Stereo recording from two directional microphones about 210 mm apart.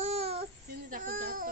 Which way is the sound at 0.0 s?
30° right (ahead or behind).